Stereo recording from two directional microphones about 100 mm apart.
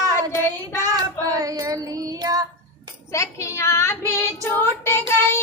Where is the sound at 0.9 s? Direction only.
35° right (ahead or behind).